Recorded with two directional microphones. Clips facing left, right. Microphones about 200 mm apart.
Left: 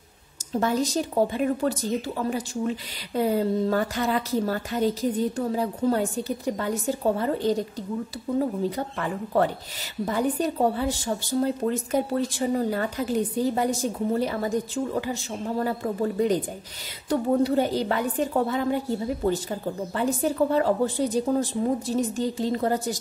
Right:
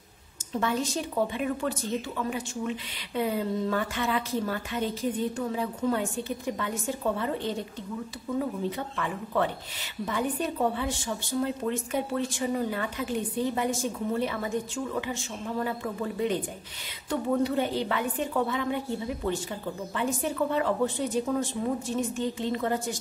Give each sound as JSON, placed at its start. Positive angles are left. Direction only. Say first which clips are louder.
{"t": 0.5, "sound": "a woman's voice", "louder": "left 4 dB", "side_deg": 40}